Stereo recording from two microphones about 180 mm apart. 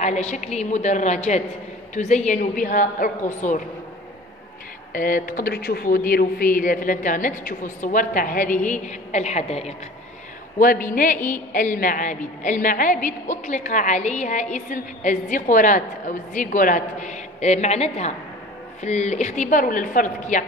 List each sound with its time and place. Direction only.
0.0 s a woman's voice: 40° left (ahead or behind)
4.9 s a woman's voice: 50° left (ahead or behind)
10.6 s a woman's voice: 50° left (ahead or behind)